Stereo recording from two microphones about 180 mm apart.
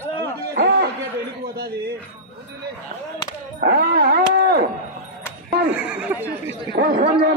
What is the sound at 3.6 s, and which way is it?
A man's voice, 55° right (ahead or behind).